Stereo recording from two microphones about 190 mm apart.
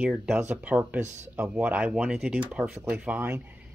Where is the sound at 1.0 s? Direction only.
40° right (ahead or behind).